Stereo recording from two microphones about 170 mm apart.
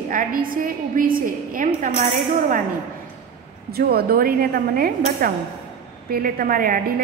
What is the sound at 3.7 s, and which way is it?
A woman's voice, 65° right (ahead or behind).